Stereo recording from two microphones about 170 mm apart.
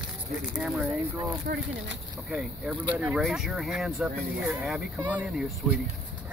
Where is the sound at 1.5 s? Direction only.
60° right (ahead or behind).